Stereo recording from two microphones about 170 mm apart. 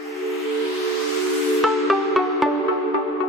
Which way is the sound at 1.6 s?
Centre (ahead or behind).